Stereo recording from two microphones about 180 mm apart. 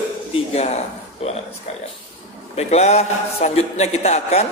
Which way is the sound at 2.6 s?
35° left (ahead or behind).